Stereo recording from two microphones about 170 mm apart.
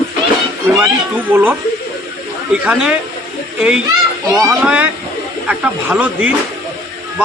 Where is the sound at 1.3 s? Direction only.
10° right (ahead or behind).